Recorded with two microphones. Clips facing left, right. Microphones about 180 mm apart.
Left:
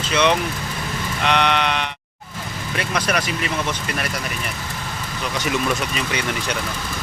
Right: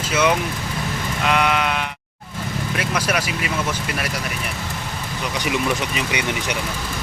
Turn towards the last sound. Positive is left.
turn(degrees=-15)  # may be behind; listen again after turning